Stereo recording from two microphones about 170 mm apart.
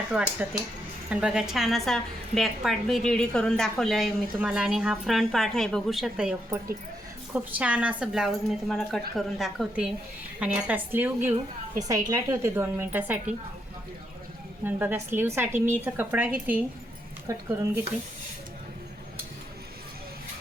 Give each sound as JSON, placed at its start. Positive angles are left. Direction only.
{"t": 0.1, "sound": "a woman's voice", "side_deg": -5}
{"t": 14.6, "sound": "a woman's voice", "side_deg": -10}